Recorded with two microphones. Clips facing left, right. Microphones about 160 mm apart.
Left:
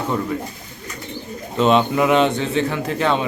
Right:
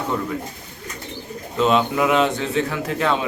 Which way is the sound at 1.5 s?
Centre (ahead or behind).